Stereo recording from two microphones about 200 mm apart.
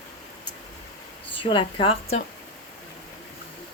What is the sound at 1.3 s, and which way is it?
Speech, 25° left (ahead or behind).